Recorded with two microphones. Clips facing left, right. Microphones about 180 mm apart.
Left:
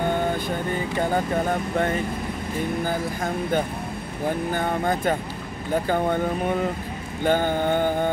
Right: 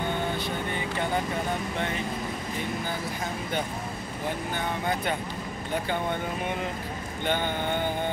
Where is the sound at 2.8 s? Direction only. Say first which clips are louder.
Left 6 dB; 45° left (ahead or behind).